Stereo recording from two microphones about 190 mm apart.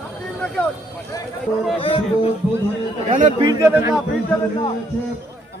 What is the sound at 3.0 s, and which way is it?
Chatter, 40° right (ahead or behind).